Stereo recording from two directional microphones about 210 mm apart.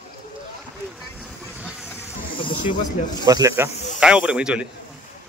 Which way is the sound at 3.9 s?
5° right (ahead or behind).